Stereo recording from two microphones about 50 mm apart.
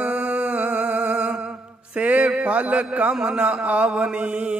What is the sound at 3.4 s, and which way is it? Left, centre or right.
Mantra, right.